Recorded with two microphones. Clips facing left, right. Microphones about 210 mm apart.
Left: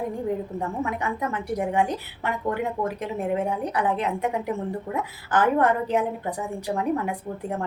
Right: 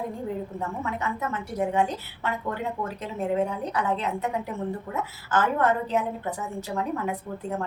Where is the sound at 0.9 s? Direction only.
15° left (ahead or behind).